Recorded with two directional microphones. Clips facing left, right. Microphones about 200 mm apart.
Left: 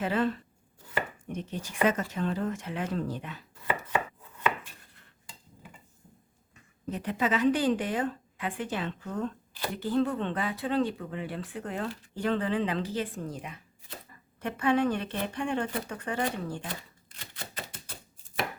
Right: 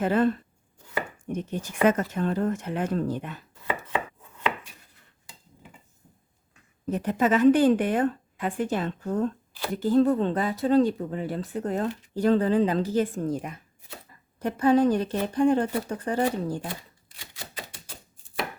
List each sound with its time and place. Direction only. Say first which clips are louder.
0.0 s a woman's voice: right 5 dB; 50° right (ahead or behind)
6.9 s a woman's voice: right 6 dB; 45° right (ahead or behind)
14.3 s speech: right 6 dB; 35° right (ahead or behind)
17.2 s typewriter: right 1 dB; 15° right (ahead or behind)